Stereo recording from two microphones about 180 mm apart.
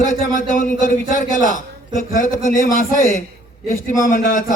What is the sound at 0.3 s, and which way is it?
Speech, 45° left (ahead or behind).